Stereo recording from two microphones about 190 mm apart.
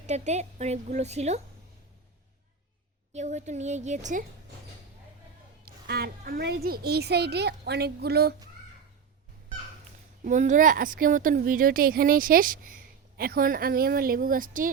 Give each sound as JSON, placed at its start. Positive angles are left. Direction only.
{"t": 0.1, "sound": "a woman's voice", "side_deg": -35}
{"t": 3.1, "sound": "a woman's voice", "side_deg": -35}
{"t": 5.6, "sound": "a child's voice", "side_deg": -55}
{"t": 10.2, "sound": "a woman's voice", "side_deg": -40}